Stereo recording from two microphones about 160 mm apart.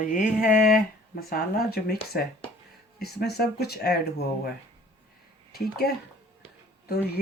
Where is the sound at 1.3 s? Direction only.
70° left (ahead or behind).